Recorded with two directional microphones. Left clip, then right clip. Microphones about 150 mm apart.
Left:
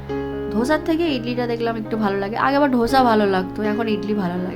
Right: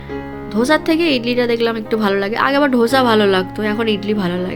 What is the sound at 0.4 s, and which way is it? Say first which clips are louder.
Speech: right 6 dB; 5° right (ahead or behind).